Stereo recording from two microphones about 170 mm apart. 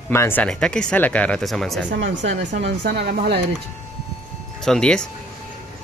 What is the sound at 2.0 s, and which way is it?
Speech, 50° right (ahead or behind).